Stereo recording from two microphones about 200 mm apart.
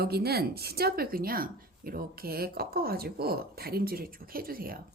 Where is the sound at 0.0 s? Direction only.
50° right (ahead or behind).